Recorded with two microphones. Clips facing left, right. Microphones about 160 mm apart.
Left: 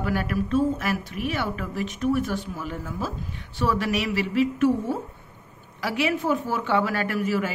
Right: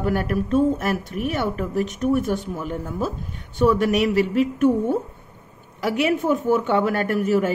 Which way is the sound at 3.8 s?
45° right (ahead or behind).